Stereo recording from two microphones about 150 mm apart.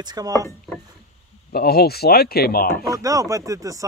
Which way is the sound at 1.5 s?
90° left.